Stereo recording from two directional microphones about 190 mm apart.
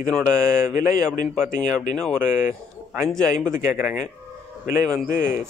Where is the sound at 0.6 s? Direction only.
15° right (ahead or behind).